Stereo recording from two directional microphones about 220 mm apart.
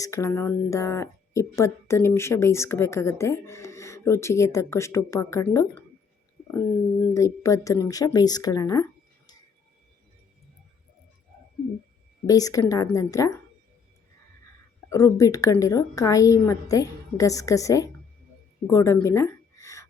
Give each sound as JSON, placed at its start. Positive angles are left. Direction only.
{"t": 0.0, "sound": "speech", "side_deg": 15}
{"t": 7.1, "sound": "a woman's voice", "side_deg": 15}
{"t": 12.2, "sound": "speech", "side_deg": 15}
{"t": 14.8, "sound": "speech", "side_deg": 15}
{"t": 18.7, "sound": "a sound", "side_deg": 10}